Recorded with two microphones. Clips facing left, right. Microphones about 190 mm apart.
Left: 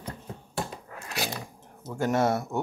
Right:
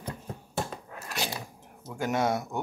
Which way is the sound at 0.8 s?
Centre (ahead or behind).